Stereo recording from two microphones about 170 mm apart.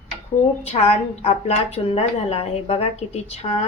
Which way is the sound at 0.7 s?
40° left (ahead or behind).